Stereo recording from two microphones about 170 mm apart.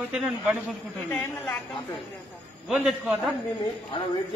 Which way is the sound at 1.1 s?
15° left (ahead or behind).